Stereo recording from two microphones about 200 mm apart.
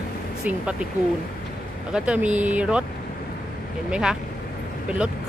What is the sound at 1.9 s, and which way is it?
Speech, 5° right (ahead or behind).